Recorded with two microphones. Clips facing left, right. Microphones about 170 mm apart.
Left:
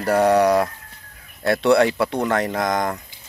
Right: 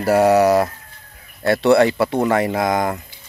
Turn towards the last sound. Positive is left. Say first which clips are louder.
# right 3 dB
turn(degrees=-5)  # may be behind; listen again after turning